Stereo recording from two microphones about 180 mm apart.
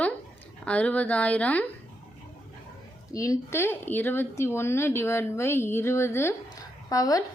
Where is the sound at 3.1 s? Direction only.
20° left (ahead or behind).